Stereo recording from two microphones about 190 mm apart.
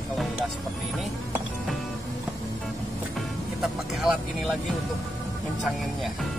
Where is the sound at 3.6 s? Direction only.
Centre (ahead or behind).